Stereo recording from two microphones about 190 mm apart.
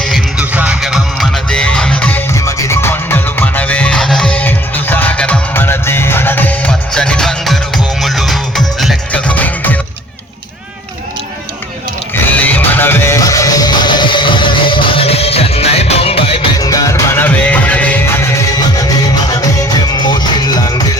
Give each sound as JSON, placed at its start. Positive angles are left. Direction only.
{"t": 0.0, "sound": "music", "side_deg": -5}
{"t": 12.4, "sound": "music", "side_deg": 10}
{"t": 16.6, "sound": "music", "side_deg": 20}